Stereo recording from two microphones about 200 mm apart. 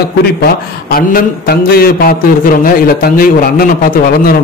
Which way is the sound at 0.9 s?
50° left (ahead or behind).